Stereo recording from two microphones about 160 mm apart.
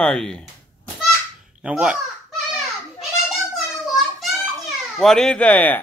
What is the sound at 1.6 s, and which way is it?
Speech, 5° right (ahead or behind).